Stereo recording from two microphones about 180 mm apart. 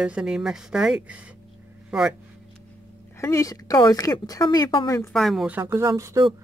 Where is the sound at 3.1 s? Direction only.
15° left (ahead or behind).